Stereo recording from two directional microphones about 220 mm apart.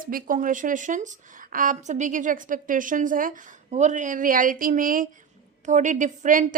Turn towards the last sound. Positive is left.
turn(degrees=-35)  # may be behind; listen again after turning